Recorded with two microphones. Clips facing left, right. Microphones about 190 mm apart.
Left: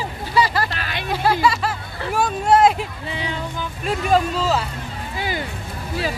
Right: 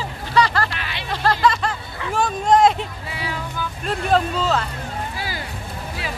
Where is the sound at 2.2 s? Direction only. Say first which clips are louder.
Even; 5° left (ahead or behind).